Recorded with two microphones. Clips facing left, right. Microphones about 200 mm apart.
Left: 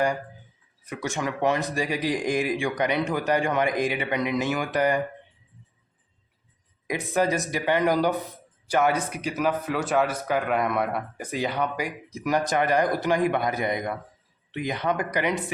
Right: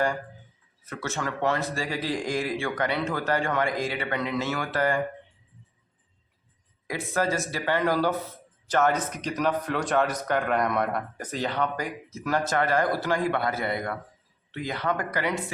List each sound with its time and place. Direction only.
0.9 s speech: 15° left (ahead or behind)
6.8 s speech: 15° left (ahead or behind)